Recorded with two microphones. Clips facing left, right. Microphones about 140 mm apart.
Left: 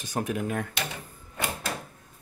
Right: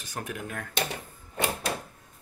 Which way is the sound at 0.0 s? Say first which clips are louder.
Left 7 dB; 20° left (ahead or behind).